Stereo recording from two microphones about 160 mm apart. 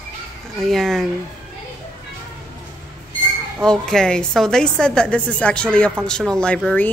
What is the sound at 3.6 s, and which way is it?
A woman's voice, 5° left (ahead or behind).